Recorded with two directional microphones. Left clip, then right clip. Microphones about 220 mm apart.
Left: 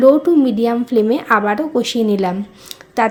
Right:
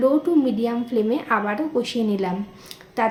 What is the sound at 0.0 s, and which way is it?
A woman's voice, 35° left (ahead or behind).